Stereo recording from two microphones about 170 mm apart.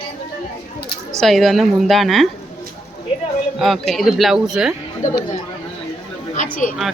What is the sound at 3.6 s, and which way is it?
A woman's voice, centre (ahead or behind).